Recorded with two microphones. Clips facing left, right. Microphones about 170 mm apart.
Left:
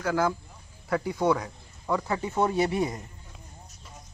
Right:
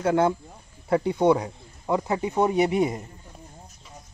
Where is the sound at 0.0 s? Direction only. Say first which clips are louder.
Right 5 dB; 25° right (ahead or behind).